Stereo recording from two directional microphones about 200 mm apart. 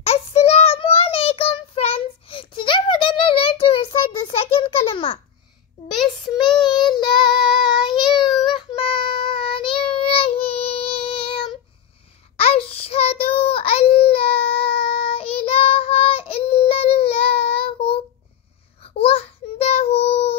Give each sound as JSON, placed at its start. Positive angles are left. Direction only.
{"t": 0.0, "sound": "child singing", "side_deg": 30}
{"t": 5.9, "sound": "child singing", "side_deg": 0}
{"t": 6.5, "sound": "child singing", "side_deg": 20}
{"t": 19.0, "sound": "child singing", "side_deg": 30}